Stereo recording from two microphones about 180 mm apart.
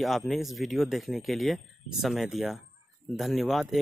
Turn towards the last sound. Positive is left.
turn(degrees=0)  # may be behind; listen again after turning